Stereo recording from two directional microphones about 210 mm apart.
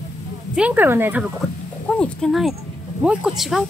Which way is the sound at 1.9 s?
5° left (ahead or behind).